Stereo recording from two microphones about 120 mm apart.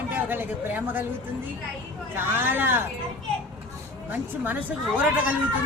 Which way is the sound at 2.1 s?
15° right (ahead or behind).